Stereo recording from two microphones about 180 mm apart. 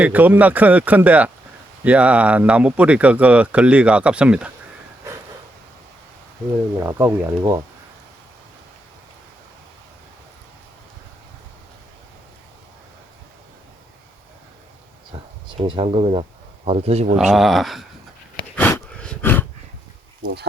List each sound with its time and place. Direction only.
0.0 s speech: 10° right (ahead or behind)
6.7 s speech: 15° right (ahead or behind)
15.1 s speech: 30° right (ahead or behind)
17.2 s speech: centre (ahead or behind)
18.5 s a sound: 10° left (ahead or behind)
20.2 s speech: 25° right (ahead or behind)